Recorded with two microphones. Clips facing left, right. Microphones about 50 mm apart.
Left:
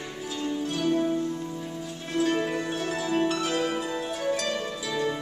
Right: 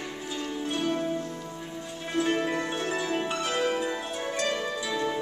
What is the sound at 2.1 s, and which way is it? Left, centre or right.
Music, centre.